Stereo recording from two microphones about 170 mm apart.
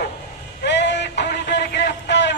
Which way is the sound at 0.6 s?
90° left.